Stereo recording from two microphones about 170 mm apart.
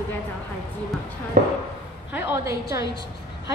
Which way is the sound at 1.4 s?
50° right (ahead or behind).